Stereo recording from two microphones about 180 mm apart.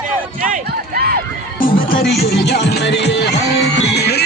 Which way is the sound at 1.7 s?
80° left.